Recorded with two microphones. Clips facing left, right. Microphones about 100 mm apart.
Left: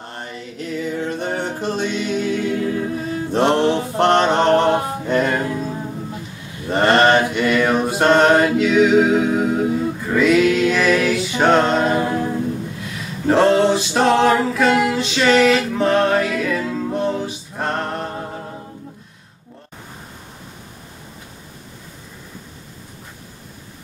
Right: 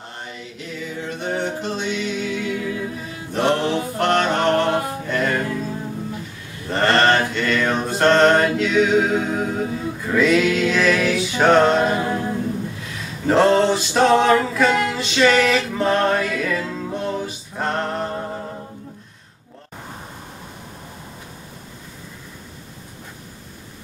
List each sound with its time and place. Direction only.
1.2 s a capella: 45° left (ahead or behind)
3.4 s a sound: 30° left (ahead or behind)
6.7 s mantra: 20° left (ahead or behind); by 12.3 s centre (ahead or behind)
13.3 s music: centre (ahead or behind)